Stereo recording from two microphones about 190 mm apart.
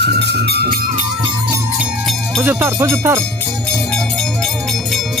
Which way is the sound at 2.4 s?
15° right (ahead or behind).